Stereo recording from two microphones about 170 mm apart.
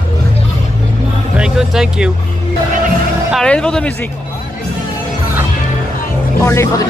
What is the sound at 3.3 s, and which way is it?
Music, 5° left (ahead or behind).